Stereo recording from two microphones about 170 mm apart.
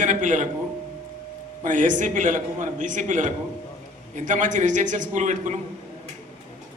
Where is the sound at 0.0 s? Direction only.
45° right (ahead or behind).